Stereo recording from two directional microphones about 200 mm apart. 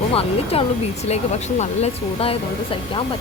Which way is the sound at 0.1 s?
30° left (ahead or behind).